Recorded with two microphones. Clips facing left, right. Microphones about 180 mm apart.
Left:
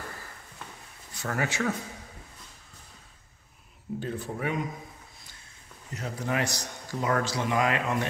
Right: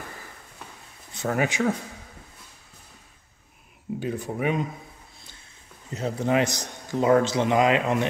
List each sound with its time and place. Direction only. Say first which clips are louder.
1.1 s speech: right 6 dB; 20° right (ahead or behind)
4.0 s speech: right 5 dB; 10° right (ahead or behind)
5.9 s a man's voice: right 7 dB; 25° right (ahead or behind)